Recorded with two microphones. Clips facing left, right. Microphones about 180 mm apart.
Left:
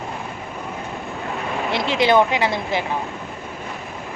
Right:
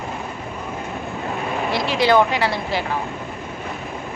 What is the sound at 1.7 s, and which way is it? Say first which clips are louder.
Speech: even; 20° left (ahead or behind).